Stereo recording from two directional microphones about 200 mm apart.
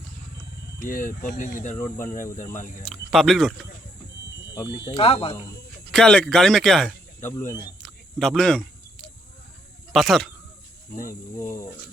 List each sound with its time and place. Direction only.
0.9 s speech: 45° left (ahead or behind)
2.8 s speech: centre (ahead or behind)
4.5 s speech: 20° left (ahead or behind)
5.9 s speech: 5° left (ahead or behind)
7.8 s cricket: centre (ahead or behind)
9.9 s speech: centre (ahead or behind)
11.3 s speech: 15° left (ahead or behind)